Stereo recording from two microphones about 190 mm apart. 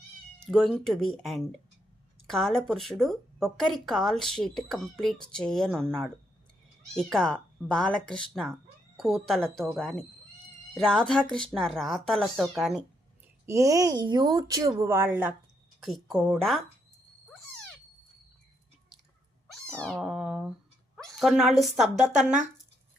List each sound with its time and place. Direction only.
0.5 s speech: centre (ahead or behind)
6.9 s speech: 5° left (ahead or behind)
13.4 s a woman's voice: 15° right (ahead or behind); by 16.6 s centre (ahead or behind)
19.5 s cat: 5° left (ahead or behind)
20.9 s speech: centre (ahead or behind)